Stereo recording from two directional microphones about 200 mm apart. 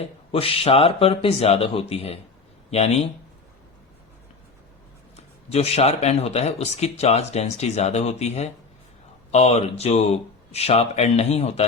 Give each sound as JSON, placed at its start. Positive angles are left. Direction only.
{"t": 0.3, "sound": "speech", "side_deg": 30}
{"t": 5.1, "sound": "speech", "side_deg": 30}